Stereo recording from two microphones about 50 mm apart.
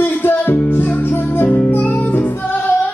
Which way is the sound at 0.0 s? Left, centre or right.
Left.